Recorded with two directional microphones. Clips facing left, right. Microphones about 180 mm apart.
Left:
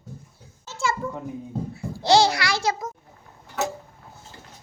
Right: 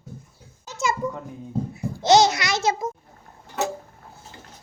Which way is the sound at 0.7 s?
15° right (ahead or behind).